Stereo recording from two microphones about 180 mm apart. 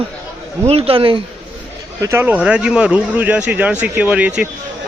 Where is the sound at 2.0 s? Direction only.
15° right (ahead or behind).